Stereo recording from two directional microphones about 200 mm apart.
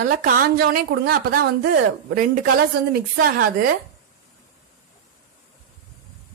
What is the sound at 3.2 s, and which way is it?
Speech, 45° right (ahead or behind).